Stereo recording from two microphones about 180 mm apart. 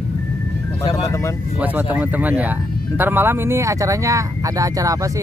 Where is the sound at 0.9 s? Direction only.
15° left (ahead or behind).